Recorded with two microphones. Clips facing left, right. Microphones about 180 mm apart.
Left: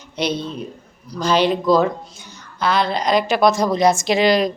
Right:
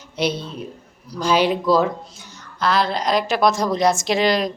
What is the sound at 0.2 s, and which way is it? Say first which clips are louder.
Speech: left 1 dB; 5° right (ahead or behind).